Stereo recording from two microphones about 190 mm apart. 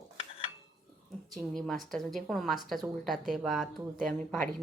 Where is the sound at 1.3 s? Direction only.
Centre (ahead or behind).